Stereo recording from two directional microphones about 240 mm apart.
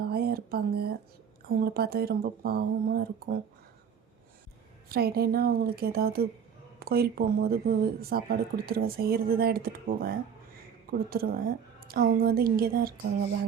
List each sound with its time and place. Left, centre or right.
0.0 s a sound: right
1.5 s speech: right
4.9 s speech: right
11.1 s speech: right